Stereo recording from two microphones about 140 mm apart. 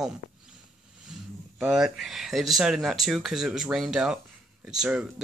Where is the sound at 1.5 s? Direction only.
5° right (ahead or behind).